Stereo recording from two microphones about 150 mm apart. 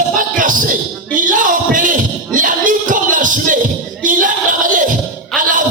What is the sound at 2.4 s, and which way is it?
Music, 60° right (ahead or behind).